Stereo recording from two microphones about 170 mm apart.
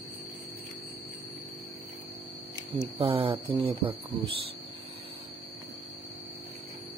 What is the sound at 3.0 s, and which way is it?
Speech, 30° right (ahead or behind).